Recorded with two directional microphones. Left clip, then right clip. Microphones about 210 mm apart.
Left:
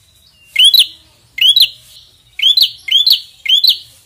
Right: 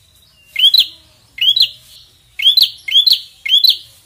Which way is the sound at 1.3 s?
35° left (ahead or behind).